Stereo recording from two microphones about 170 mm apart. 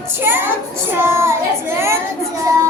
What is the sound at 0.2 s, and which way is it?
Speech, 15° right (ahead or behind).